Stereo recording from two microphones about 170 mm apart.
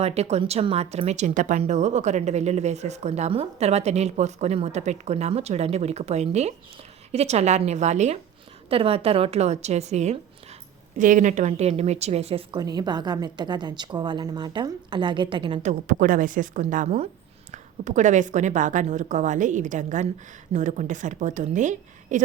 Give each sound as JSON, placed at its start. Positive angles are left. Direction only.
{"t": 0.0, "sound": "speech", "side_deg": -40}
{"t": 12.5, "sound": "a woman's voice", "side_deg": -25}
{"t": 15.6, "sound": "speech", "side_deg": -50}